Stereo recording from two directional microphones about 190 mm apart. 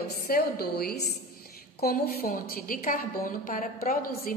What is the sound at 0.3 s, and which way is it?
A woman's voice, 55° left (ahead or behind).